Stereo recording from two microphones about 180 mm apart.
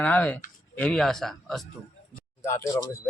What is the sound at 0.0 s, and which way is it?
A man's voice, 10° left (ahead or behind).